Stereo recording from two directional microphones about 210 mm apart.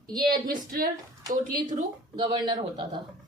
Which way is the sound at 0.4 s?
40° right (ahead or behind).